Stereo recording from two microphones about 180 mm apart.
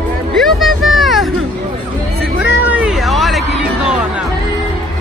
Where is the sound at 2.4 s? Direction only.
5° right (ahead or behind).